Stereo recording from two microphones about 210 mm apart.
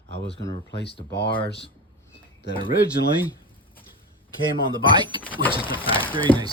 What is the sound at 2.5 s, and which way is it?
Speech, 40° left (ahead or behind).